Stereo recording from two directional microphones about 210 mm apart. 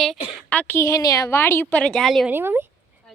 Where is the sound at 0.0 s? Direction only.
Centre (ahead or behind).